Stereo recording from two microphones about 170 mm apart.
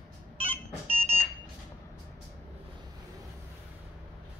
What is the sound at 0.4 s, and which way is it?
Beep, 35° right (ahead or behind).